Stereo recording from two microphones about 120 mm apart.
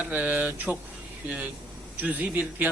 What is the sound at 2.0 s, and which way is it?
Speech, 15° right (ahead or behind).